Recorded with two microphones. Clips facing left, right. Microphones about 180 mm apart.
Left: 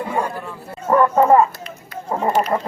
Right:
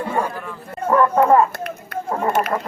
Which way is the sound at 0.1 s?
15° left (ahead or behind).